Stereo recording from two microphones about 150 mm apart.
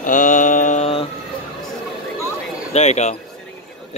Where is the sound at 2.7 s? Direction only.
45° left (ahead or behind).